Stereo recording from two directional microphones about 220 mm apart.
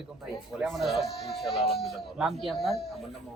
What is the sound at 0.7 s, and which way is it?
Speech, centre (ahead or behind).